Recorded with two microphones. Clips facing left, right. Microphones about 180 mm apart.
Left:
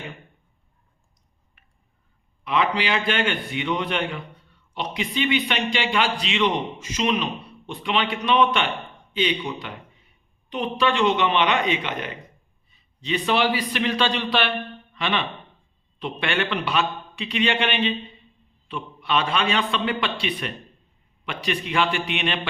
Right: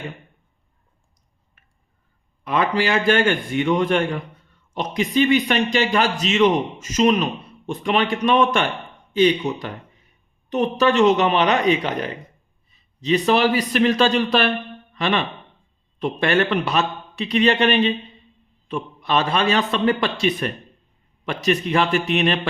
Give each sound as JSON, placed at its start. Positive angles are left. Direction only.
{"t": 2.4, "sound": "a man's voice", "side_deg": -45}